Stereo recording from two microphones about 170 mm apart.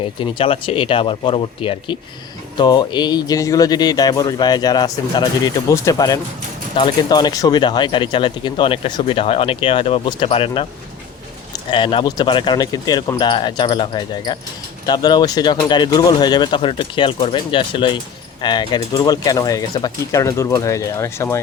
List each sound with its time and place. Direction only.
0.0 s speech: 30° left (ahead or behind)
11.7 s speech: 30° left (ahead or behind)